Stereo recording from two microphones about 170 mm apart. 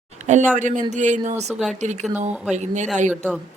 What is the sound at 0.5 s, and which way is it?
Speech, 50° right (ahead or behind).